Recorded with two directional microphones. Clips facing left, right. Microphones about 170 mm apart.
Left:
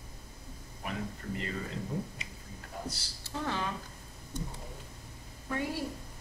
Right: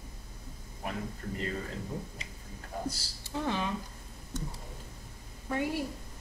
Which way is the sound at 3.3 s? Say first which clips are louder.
Right 2 dB; 15° right (ahead or behind).